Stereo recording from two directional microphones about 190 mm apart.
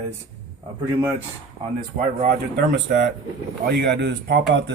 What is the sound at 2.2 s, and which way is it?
Speech, 65° right (ahead or behind).